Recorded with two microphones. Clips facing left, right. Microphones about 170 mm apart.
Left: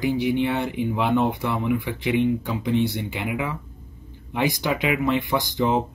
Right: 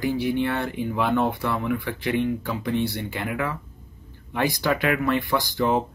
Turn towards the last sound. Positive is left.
turn(degrees=20)  # may be behind; listen again after turning